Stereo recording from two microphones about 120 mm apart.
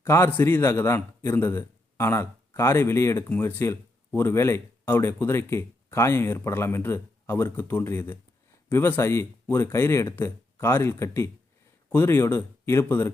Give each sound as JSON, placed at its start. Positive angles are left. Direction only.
{"t": 0.0, "sound": "a man's voice", "side_deg": 20}